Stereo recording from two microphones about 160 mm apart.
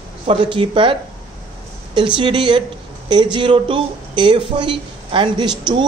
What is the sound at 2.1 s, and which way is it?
Speech, 30° right (ahead or behind).